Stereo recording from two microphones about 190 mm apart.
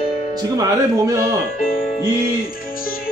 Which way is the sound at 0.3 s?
20° right (ahead or behind).